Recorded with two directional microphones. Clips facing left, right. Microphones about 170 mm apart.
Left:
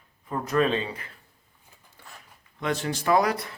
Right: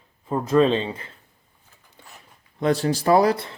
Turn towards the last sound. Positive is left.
turn(degrees=-30)  # may be behind; listen again after turning